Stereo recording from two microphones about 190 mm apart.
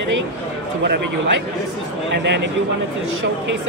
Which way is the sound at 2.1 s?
65° right (ahead or behind).